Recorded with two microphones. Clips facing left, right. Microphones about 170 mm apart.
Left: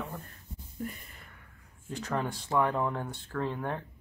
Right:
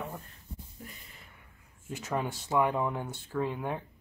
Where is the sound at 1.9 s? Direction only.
10° right (ahead or behind).